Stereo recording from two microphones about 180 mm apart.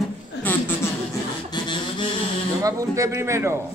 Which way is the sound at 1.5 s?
25° left (ahead or behind).